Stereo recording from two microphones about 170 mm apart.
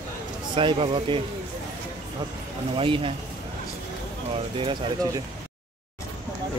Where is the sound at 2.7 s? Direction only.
30° right (ahead or behind).